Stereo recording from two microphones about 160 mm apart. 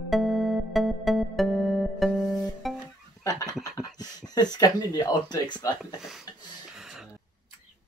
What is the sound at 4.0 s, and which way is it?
Speech, 25° left (ahead or behind).